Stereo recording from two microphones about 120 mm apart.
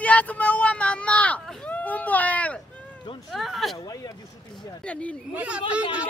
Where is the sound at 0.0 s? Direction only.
10° left (ahead or behind).